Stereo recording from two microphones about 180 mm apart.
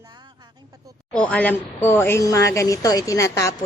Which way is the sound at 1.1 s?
5° left (ahead or behind).